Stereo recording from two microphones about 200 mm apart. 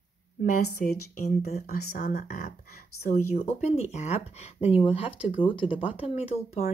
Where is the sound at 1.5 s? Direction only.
45° left (ahead or behind).